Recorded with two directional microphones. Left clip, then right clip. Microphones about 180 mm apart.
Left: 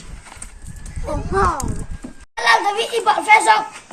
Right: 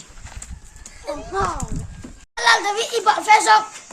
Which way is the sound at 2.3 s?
15° right (ahead or behind).